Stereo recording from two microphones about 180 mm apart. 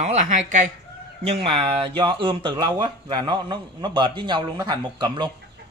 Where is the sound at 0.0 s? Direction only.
40° right (ahead or behind).